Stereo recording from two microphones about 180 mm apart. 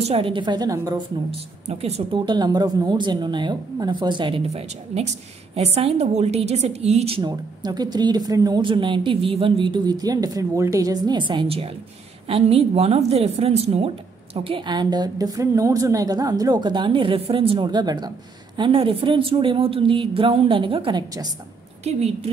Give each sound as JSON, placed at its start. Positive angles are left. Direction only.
{"t": 0.0, "sound": "a woman's voice", "side_deg": -30}
{"t": 1.3, "sound": "a woman's voice", "side_deg": -35}